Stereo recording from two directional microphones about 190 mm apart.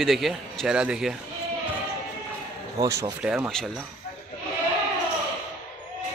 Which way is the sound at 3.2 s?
5° right (ahead or behind).